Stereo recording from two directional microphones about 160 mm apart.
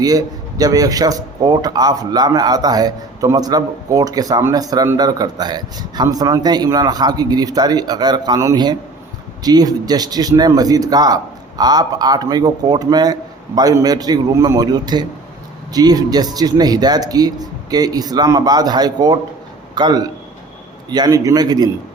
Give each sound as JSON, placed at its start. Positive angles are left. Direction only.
{"t": 0.0, "sound": "speech", "side_deg": -25}